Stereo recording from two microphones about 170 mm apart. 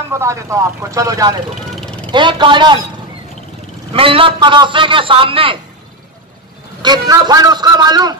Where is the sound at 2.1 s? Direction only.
30° right (ahead or behind).